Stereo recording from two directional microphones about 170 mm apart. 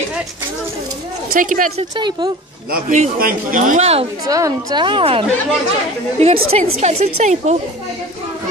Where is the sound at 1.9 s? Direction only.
25° right (ahead or behind).